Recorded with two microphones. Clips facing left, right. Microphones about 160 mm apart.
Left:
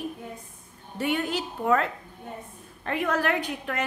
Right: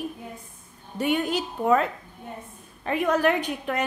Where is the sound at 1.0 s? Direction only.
15° right (ahead or behind).